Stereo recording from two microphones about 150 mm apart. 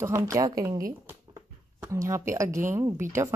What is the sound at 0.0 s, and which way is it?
Speech, 20° right (ahead or behind).